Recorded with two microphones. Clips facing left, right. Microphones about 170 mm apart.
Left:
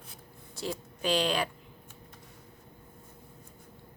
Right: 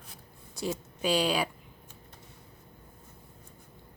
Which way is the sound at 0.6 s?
15° right (ahead or behind).